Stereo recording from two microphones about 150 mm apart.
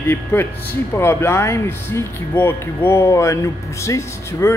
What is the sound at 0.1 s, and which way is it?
Speech, 15° left (ahead or behind).